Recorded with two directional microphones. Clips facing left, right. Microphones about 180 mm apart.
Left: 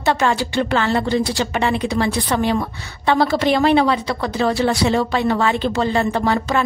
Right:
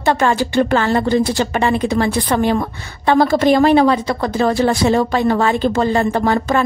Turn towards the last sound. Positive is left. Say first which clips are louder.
# right 3 dB
turn(degrees=-50)  # may be behind; listen again after turning